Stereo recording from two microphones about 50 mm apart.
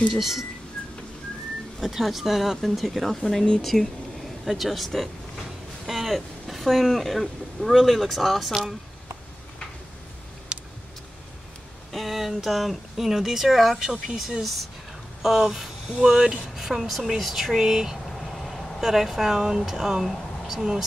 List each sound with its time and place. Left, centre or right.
0.1 s speech: centre
1.8 s speech: centre
3.3 s speech: centre
10.5 s vehicle: right
11.9 s speech: centre
14.4 s speech: centre
18.2 s vehicle: centre
18.8 s speech: centre